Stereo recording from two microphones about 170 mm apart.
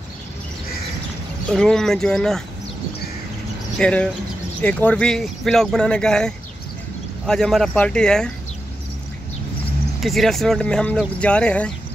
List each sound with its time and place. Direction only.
1.5 s speech: 5° left (ahead or behind)
3.7 s speech: 5° left (ahead or behind)
9.9 s speech: centre (ahead or behind)